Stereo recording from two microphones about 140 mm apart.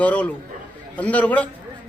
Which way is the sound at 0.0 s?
10° left (ahead or behind).